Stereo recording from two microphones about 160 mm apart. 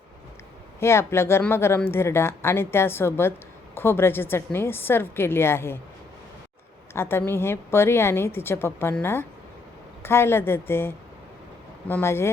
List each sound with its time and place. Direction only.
0.8 s speech: 15° left (ahead or behind)
6.9 s speech: 15° left (ahead or behind)